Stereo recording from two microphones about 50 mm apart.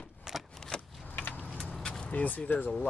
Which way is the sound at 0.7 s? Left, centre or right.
Centre.